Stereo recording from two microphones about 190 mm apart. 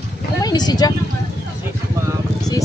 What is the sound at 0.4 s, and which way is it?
Speech, 20° left (ahead or behind).